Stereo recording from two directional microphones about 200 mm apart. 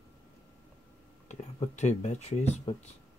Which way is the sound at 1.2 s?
35° left (ahead or behind).